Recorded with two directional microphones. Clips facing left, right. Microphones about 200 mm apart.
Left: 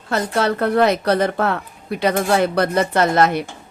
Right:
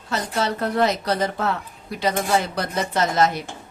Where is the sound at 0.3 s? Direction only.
60° left (ahead or behind).